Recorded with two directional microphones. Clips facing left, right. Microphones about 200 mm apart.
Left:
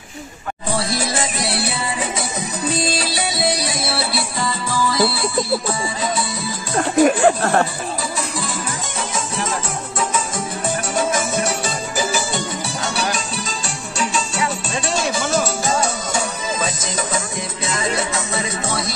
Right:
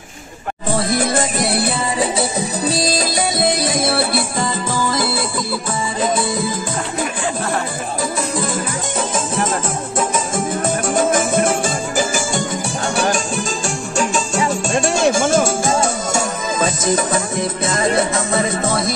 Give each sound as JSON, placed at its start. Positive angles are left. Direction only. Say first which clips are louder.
{"t": 0.7, "sound": "music", "louder": "right 4 dB", "side_deg": -50}
{"t": 2.7, "sound": "music", "louder": "right 1 dB", "side_deg": -40}
{"t": 6.7, "sound": "music", "louder": "left 8 dB", "side_deg": 55}
{"t": 9.9, "sound": "music", "louder": "right 3 dB", "side_deg": -50}